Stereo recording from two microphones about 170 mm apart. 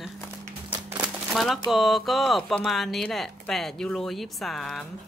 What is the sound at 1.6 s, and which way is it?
Speech, centre (ahead or behind).